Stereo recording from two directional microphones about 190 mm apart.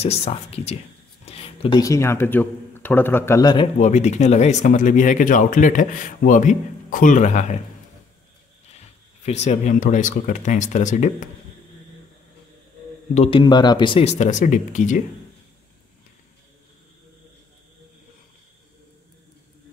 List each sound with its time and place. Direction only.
0.0 s speech: 30° left (ahead or behind)
1.2 s a sound: 30° left (ahead or behind)
1.8 s speech: 15° left (ahead or behind)
3.8 s speech: 35° left (ahead or behind)
8.7 s speech: 35° left (ahead or behind)
13.1 s speech: 30° left (ahead or behind)